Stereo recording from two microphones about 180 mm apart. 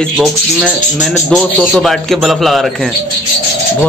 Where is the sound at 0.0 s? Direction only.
Centre (ahead or behind).